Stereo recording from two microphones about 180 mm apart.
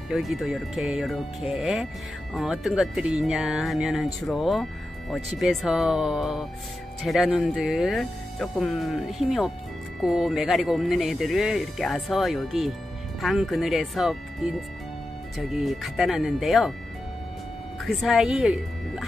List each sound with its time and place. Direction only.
0.1 s speech: centre (ahead or behind)
18.0 s speech: centre (ahead or behind)